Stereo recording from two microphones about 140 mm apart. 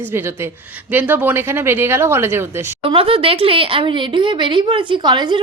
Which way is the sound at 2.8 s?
40° right (ahead or behind).